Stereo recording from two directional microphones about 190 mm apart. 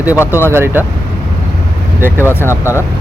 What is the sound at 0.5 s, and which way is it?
Speech, 10° right (ahead or behind).